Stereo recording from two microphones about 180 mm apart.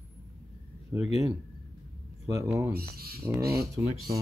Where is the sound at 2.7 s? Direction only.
55° right (ahead or behind).